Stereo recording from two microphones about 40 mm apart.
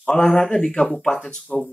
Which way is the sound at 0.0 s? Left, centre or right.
Centre.